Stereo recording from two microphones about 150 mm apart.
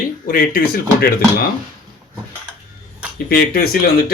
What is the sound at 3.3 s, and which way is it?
Speech, 90° left.